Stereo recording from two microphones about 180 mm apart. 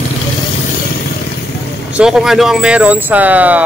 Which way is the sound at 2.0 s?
5° right (ahead or behind).